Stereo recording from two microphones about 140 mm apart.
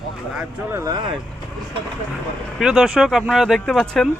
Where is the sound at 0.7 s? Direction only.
30° right (ahead or behind).